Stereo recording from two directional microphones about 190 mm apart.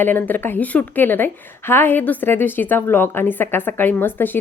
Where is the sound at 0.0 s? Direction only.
10° left (ahead or behind).